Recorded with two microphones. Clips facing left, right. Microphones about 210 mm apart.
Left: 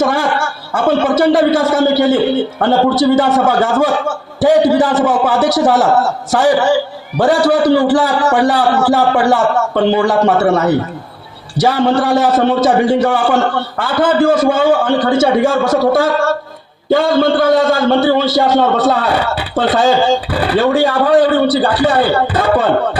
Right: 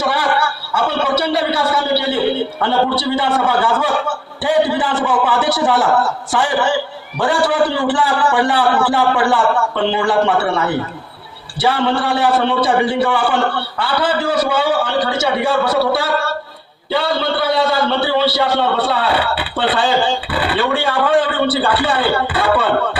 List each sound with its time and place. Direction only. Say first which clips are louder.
0.0 s a man's voice: left 3 dB; 45° left (ahead or behind)